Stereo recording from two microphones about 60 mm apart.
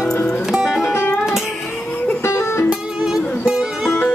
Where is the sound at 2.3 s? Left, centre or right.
Left.